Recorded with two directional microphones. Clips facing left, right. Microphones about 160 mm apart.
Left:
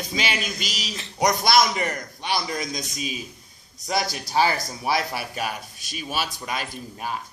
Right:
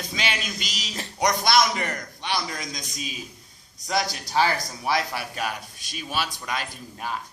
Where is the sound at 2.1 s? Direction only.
10° left (ahead or behind).